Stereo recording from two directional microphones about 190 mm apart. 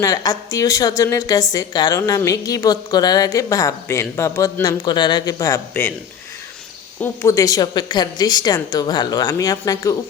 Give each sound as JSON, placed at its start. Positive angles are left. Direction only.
{"t": 0.0, "sound": "a woman's voice", "side_deg": 20}
{"t": 7.0, "sound": "a woman's voice", "side_deg": 15}